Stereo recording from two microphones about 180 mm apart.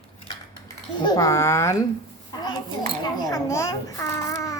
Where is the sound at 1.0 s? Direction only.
20° left (ahead or behind).